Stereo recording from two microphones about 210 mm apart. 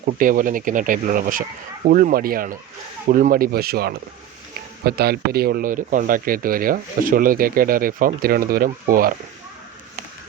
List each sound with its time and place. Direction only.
0.0 s speech: 40° right (ahead or behind)